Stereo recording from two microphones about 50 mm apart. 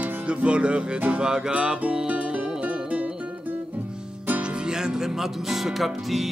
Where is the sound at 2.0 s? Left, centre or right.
Right.